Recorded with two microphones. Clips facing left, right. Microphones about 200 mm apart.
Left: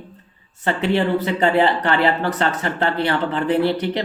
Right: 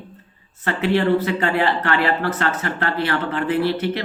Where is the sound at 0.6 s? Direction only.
25° left (ahead or behind).